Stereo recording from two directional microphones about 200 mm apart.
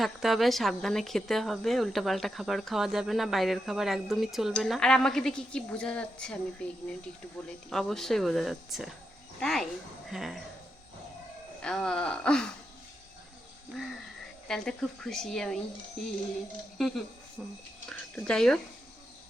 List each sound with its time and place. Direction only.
0.0 s speech: centre (ahead or behind)
11.6 s speech: 5° left (ahead or behind)
13.7 s speech: centre (ahead or behind)
16.8 s speech: centre (ahead or behind)